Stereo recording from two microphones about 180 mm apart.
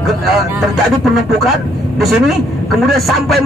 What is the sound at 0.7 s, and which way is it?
A man's voice, centre (ahead or behind).